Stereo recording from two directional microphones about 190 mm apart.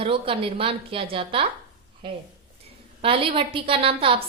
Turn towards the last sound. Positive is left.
turn(degrees=-30)  # may be behind; listen again after turning